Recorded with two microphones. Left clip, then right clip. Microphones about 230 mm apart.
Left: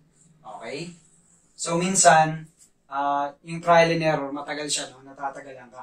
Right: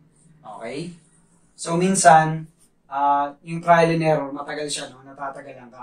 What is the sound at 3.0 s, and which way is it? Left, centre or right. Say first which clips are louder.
Speech: right 5 dB; left.